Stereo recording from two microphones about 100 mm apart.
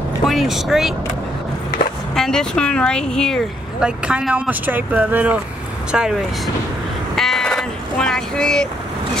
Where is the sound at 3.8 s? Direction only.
10° right (ahead or behind).